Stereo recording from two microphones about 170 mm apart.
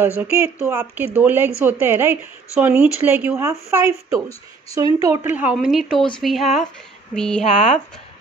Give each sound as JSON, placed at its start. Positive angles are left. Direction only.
{"t": 0.2, "sound": "speech", "side_deg": -10}
{"t": 7.5, "sound": "speech", "side_deg": 40}